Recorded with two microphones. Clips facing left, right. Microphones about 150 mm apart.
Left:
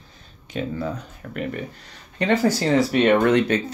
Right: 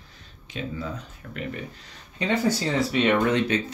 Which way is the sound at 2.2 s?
90° left.